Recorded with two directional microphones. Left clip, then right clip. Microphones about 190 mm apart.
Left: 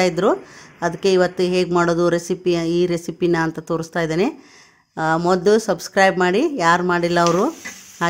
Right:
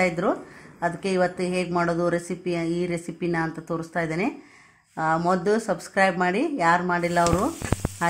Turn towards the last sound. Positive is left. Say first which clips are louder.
# left 5 dB
turn(degrees=40)  # may be behind; listen again after turning